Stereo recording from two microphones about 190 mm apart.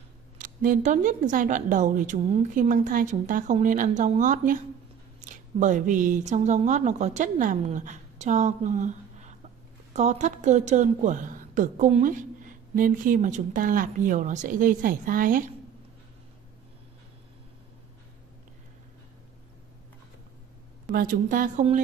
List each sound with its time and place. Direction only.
0.4 s a woman's voice: 45° right (ahead or behind)
20.9 s a woman's voice: 50° right (ahead or behind)